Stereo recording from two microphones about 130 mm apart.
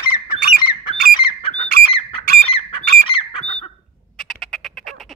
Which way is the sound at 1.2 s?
45° left (ahead or behind).